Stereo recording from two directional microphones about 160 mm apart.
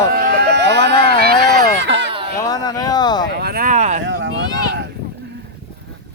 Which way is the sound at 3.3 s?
70° right (ahead or behind).